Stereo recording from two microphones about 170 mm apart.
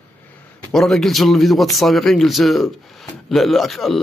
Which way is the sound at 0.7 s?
Centre (ahead or behind).